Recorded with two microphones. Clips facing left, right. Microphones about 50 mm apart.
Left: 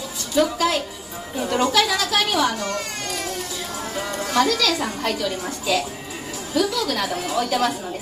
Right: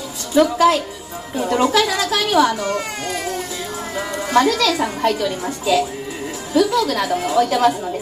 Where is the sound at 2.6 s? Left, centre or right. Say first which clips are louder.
Right 5 dB; centre.